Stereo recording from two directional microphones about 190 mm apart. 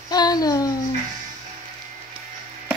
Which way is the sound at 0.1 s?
20° left (ahead or behind).